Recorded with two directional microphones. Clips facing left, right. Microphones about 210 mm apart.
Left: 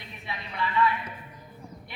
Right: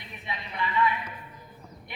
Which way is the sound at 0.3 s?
15° right (ahead or behind).